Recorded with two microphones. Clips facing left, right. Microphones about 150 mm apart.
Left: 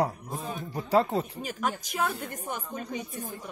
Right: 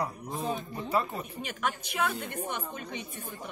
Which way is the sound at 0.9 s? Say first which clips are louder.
Left 7 dB; 90° left.